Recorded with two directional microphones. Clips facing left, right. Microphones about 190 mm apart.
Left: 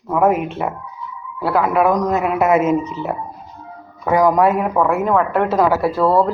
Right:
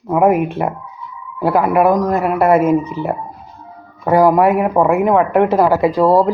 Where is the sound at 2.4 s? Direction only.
55° right (ahead or behind).